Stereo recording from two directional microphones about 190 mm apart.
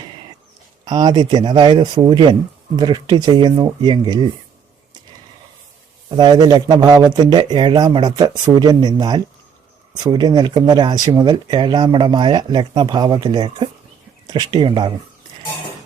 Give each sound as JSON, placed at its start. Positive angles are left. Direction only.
{"t": 0.9, "sound": "speech", "side_deg": -20}
{"t": 6.1, "sound": "speech", "side_deg": -20}